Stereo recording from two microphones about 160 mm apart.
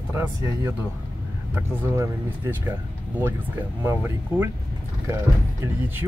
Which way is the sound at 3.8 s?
15° right (ahead or behind).